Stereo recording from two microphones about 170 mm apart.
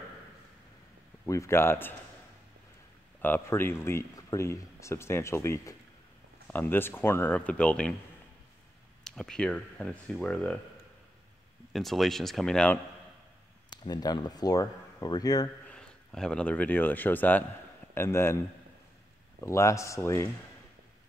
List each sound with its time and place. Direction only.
1.2 s speech: 15° left (ahead or behind)
3.2 s speech: 10° left (ahead or behind)
9.0 s speech: 5° left (ahead or behind)
11.7 s speech: centre (ahead or behind)
13.7 s speech: 25° left (ahead or behind)
15.7 s speech: 5° left (ahead or behind)
19.4 s speech: 15° left (ahead or behind)